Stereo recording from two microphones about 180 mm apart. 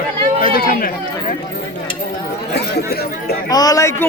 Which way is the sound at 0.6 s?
55° left (ahead or behind).